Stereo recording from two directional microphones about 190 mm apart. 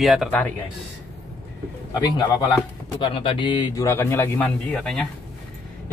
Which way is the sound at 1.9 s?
20° left (ahead or behind).